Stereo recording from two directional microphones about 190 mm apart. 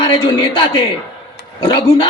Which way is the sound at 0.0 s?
25° left (ahead or behind).